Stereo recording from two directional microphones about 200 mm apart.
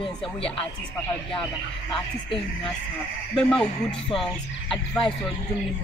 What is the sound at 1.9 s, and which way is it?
Speech, 25° left (ahead or behind).